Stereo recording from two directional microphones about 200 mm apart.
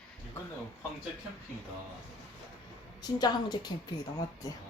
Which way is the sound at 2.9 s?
20° left (ahead or behind).